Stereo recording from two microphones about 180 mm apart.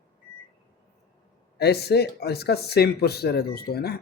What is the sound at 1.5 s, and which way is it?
Speech, 65° left (ahead or behind).